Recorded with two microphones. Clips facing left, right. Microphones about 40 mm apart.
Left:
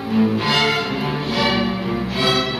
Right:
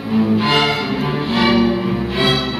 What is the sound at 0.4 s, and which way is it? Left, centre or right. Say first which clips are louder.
Music: right 3 dB; right.